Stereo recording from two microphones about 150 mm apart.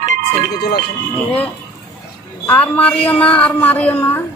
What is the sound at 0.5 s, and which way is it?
Speech, 90° left.